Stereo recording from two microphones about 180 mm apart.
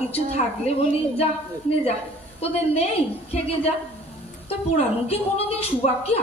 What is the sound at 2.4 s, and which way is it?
A woman's voice, 35° left (ahead or behind).